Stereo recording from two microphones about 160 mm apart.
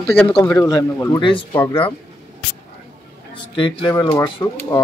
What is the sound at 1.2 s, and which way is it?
Speech, 30° left (ahead or behind).